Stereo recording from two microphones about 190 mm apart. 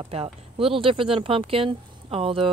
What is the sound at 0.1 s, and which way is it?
Speech, 30° right (ahead or behind).